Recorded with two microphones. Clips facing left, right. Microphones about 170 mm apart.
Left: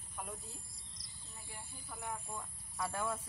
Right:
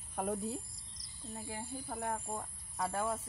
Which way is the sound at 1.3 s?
60° right (ahead or behind).